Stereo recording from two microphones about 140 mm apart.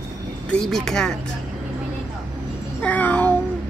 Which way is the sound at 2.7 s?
10° left (ahead or behind).